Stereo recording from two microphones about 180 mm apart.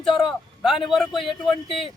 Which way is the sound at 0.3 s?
Centre (ahead or behind).